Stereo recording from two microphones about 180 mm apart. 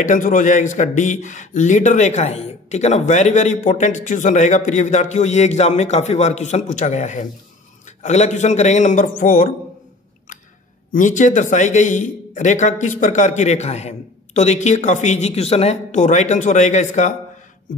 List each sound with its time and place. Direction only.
0.0 s a man's voice: 45° left (ahead or behind)
10.9 s a man's voice: 45° left (ahead or behind)